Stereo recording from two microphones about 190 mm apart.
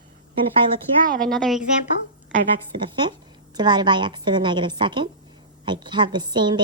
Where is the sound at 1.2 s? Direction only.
Centre (ahead or behind).